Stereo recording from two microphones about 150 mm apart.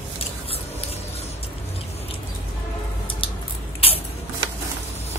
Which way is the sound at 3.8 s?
40° left (ahead or behind).